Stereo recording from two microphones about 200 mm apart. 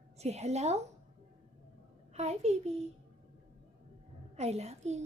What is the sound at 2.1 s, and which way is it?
Speech, 35° right (ahead or behind).